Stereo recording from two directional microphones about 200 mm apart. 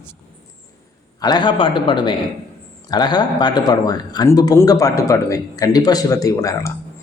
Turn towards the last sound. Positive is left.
turn(degrees=15)  # may be behind; listen again after turning